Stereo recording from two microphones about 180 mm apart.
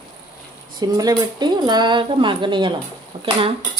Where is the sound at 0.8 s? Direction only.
20° right (ahead or behind).